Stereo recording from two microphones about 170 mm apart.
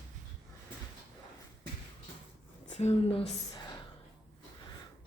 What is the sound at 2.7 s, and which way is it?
Speech, 40° left (ahead or behind).